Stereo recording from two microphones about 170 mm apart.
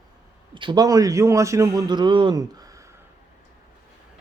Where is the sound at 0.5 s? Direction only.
25° right (ahead or behind).